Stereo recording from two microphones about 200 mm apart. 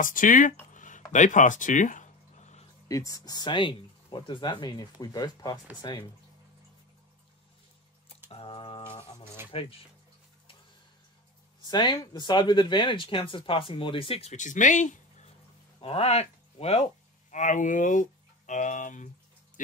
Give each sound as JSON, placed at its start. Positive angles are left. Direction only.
{"t": 0.0, "sound": "speech", "side_deg": 40}
{"t": 0.7, "sound": "a sound", "side_deg": 40}
{"t": 2.9, "sound": "speech", "side_deg": 15}
{"t": 8.3, "sound": "a sound", "side_deg": 25}
{"t": 9.5, "sound": "speech", "side_deg": 30}
{"t": 11.6, "sound": "speech", "side_deg": 20}